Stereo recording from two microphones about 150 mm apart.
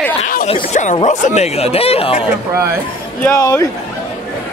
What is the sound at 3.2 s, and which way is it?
Speech, 20° left (ahead or behind).